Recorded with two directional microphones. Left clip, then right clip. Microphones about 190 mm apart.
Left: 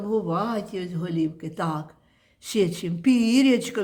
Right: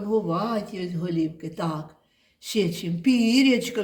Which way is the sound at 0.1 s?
40° left (ahead or behind).